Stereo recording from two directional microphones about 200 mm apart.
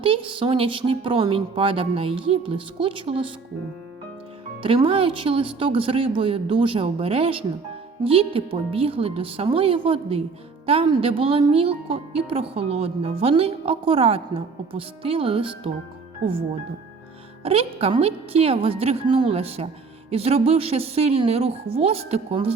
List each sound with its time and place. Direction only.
0.0 s a woman's voice: 25° right (ahead or behind)
4.6 s a woman's voice: 25° right (ahead or behind)
17.4 s a woman's voice: 30° right (ahead or behind)